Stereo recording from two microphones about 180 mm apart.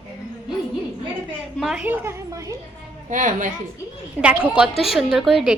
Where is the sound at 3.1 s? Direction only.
45° right (ahead or behind).